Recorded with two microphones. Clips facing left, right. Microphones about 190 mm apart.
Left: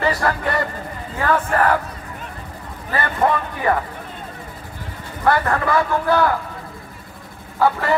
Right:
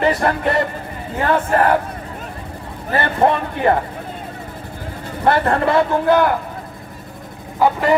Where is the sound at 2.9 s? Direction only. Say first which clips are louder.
Right 3 dB; 30° right (ahead or behind).